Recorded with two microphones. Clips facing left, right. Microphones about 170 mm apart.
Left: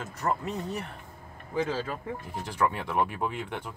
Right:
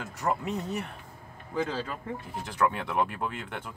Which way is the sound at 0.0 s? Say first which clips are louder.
Even; 5° right (ahead or behind).